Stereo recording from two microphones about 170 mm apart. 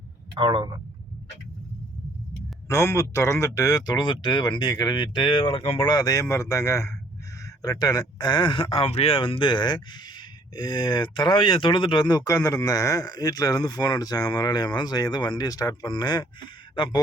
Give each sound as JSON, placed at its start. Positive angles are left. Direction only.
{"t": 0.3, "sound": "a man's voice", "side_deg": -25}
{"t": 2.6, "sound": "speech", "side_deg": 15}
{"t": 5.9, "sound": "speech", "side_deg": 20}